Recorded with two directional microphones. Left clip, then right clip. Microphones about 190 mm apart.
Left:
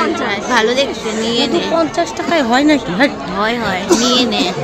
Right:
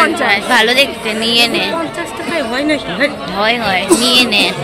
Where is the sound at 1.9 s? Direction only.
60° left (ahead or behind).